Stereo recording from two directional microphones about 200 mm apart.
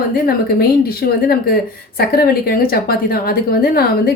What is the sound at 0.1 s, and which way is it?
A woman's voice, 45° left (ahead or behind).